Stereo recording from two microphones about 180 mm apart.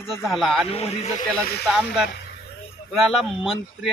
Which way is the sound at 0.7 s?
35° left (ahead or behind).